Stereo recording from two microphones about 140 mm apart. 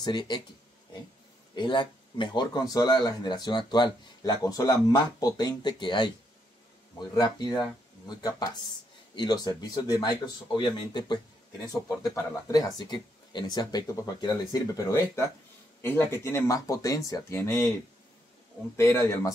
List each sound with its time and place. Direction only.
0.0 s speech: 30° left (ahead or behind)
1.5 s speech: 30° left (ahead or behind)
7.2 s speech: 30° left (ahead or behind)
18.8 s speech: 20° left (ahead or behind)